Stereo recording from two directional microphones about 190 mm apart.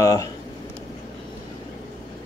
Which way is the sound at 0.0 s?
20° left (ahead or behind).